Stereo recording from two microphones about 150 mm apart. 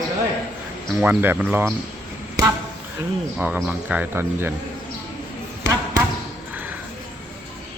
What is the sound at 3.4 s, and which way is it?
Speech, 10° right (ahead or behind).